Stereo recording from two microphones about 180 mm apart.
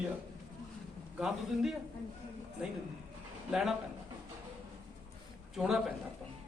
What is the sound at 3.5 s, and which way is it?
Speech, centre (ahead or behind).